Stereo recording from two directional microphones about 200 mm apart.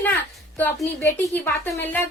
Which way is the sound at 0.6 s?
10° left (ahead or behind).